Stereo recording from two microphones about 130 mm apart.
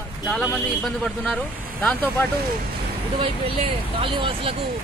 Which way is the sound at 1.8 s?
15° left (ahead or behind).